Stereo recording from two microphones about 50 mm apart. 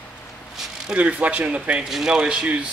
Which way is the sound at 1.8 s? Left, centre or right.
Centre.